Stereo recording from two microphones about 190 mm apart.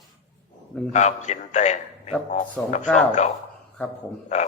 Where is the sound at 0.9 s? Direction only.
35° left (ahead or behind).